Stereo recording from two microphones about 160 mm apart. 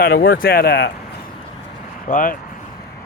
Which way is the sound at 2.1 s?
55° left (ahead or behind).